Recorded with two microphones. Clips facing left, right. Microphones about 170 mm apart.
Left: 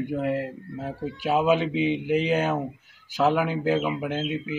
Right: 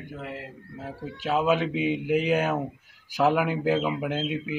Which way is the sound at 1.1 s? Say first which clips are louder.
Left 2 dB; 10° left (ahead or behind).